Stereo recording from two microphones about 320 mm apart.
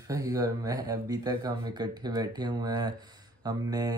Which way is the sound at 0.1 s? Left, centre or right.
Centre.